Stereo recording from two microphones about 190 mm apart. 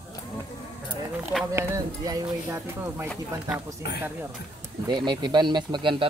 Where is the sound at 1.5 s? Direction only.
15° right (ahead or behind).